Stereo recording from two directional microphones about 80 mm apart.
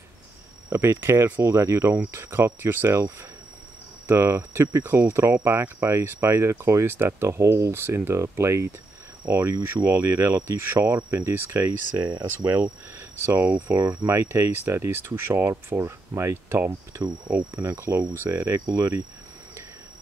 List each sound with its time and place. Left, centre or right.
0.7 s speech: right